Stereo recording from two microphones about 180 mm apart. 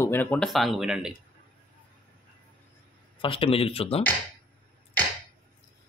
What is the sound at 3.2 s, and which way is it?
Speech, 30° left (ahead or behind).